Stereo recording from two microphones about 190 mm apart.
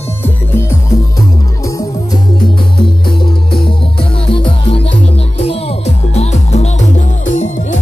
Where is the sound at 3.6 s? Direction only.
30° left (ahead or behind).